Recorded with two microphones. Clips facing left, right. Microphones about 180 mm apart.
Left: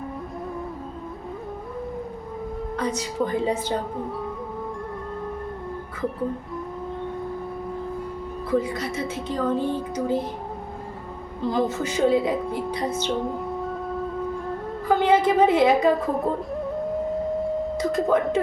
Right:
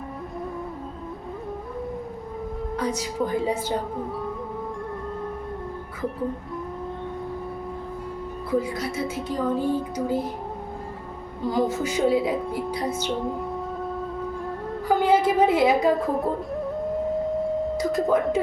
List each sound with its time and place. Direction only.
2.7 s speech: 10° right (ahead or behind)
8.4 s speech: 10° right (ahead or behind)
11.4 s speech: 10° right (ahead or behind)
14.4 s music: 5° right (ahead or behind)
17.4 s music: 5° right (ahead or behind)